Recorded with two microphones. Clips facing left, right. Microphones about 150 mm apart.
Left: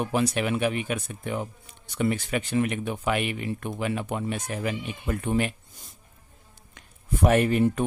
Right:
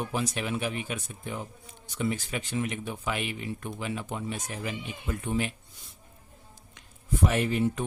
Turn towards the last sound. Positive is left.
turn(degrees=55)  # may be behind; listen again after turning